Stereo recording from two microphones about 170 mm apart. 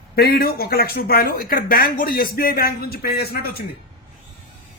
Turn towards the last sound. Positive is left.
turn(degrees=65)  # may be behind; listen again after turning